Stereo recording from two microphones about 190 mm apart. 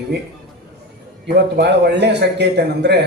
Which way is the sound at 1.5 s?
60° right (ahead or behind).